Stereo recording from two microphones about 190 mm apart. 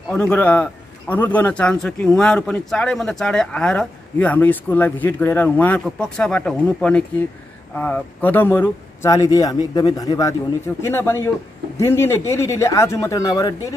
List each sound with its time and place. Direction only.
0.1 s a man's voice: 10° left (ahead or behind)